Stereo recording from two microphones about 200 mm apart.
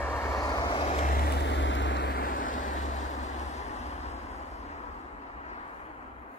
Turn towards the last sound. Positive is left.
turn(degrees=35)  # may be behind; listen again after turning